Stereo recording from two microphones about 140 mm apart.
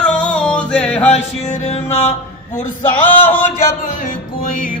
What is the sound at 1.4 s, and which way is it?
Music, 55° left (ahead or behind).